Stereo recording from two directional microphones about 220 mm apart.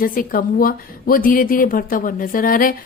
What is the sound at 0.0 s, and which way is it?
Speech, 40° left (ahead or behind).